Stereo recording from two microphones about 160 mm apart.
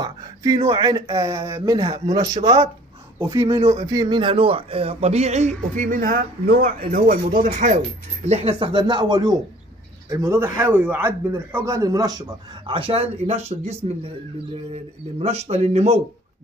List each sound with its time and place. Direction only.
0.0 s a sound: 20° right (ahead or behind)
0.6 s speech: 40° right (ahead or behind)
0.8 s a man's voice: 25° right (ahead or behind)
3.8 s a man's voice: 20° right (ahead or behind); by 7.8 s 55° right (ahead or behind)
8.3 s a man's voice: 40° right (ahead or behind)